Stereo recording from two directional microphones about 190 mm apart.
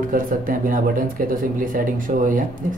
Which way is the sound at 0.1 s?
45° right (ahead or behind).